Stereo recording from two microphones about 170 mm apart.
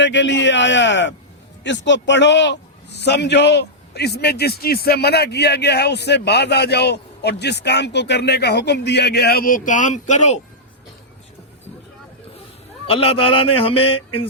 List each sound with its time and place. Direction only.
0.0 s a man's voice: 90° left; by 10.4 s 45° left (ahead or behind)
12.9 s a man's voice: 35° left (ahead or behind)